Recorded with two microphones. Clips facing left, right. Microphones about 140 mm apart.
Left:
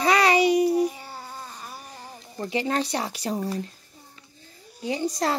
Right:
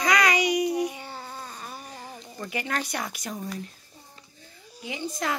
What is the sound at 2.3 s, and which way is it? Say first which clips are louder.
Speech: left 6 dB; 25° left (ahead or behind).